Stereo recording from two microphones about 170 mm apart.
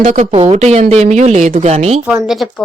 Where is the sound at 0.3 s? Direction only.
30° right (ahead or behind).